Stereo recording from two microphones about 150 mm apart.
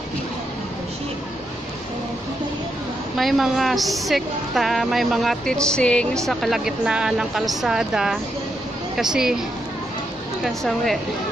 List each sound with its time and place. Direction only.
3.2 s a woman's voice: centre (ahead or behind)
10.4 s a woman's voice: centre (ahead or behind)